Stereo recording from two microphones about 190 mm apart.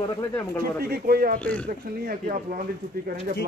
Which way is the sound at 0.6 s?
50° right (ahead or behind).